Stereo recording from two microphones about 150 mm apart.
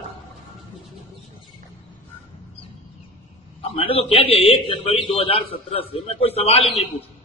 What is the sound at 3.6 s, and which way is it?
A man's voice, 40° left (ahead or behind).